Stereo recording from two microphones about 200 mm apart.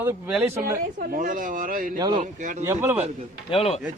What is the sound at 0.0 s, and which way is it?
Speech, 10° right (ahead or behind).